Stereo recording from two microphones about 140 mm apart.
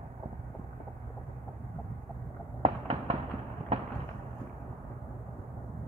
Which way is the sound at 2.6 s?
45° right (ahead or behind).